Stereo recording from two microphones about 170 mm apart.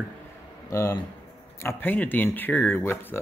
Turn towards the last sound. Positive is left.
turn(degrees=15)  # may be behind; listen again after turning